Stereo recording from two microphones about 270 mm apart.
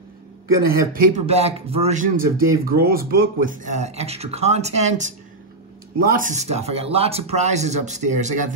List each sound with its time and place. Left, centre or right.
0.9 s speech: right